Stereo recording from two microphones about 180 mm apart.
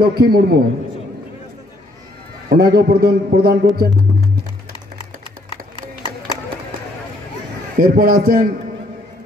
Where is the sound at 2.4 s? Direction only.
60° right (ahead or behind).